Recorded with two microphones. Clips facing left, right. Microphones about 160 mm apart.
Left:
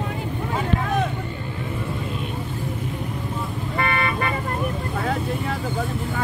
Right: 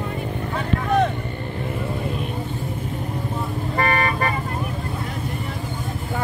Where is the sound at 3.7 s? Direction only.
40° right (ahead or behind).